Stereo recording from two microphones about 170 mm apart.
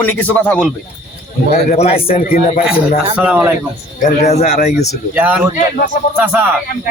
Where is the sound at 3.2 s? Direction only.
5° right (ahead or behind).